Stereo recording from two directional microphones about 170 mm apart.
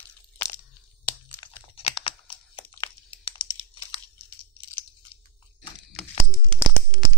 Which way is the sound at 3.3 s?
30° left (ahead or behind).